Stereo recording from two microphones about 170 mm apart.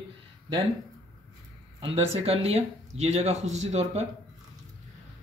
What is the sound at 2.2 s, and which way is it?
Speech, 35° right (ahead or behind).